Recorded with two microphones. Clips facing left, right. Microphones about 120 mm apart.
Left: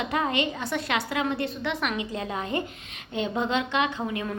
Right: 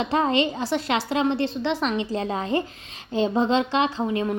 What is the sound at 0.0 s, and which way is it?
A woman's voice, 30° right (ahead or behind).